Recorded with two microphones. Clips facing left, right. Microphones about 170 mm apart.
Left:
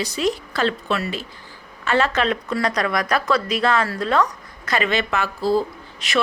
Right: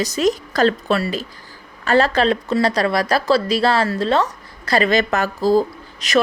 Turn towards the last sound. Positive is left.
turn(degrees=-40)  # may be behind; listen again after turning